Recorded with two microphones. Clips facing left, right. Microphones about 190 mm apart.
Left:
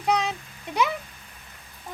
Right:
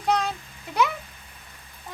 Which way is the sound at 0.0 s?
Centre (ahead or behind).